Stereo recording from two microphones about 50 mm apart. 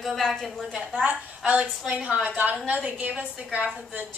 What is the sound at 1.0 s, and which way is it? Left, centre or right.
A woman's voice, right.